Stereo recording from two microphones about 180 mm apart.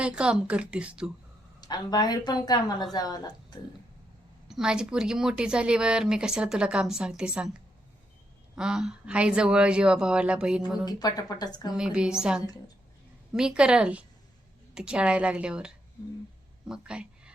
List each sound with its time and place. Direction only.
0.0 s speech: 5° right (ahead or behind)
1.6 s a woman's voice: 25° left (ahead or behind)
4.4 s a woman's voice: 5° right (ahead or behind)
8.5 s a woman's voice: 5° right (ahead or behind)
10.8 s a woman's voice: 20° left (ahead or behind)
11.8 s a woman's voice: 5° right (ahead or behind)